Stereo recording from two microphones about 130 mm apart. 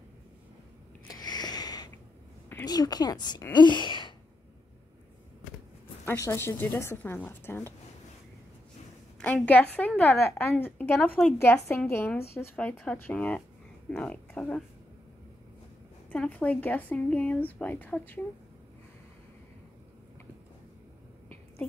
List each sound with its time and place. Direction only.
1.0 s a sound: 30° left (ahead or behind)
2.6 s a woman's voice: 30° left (ahead or behind)
6.0 s speech: 20° left (ahead or behind)
9.2 s speech: 10° left (ahead or behind)
16.1 s speech: 10° left (ahead or behind)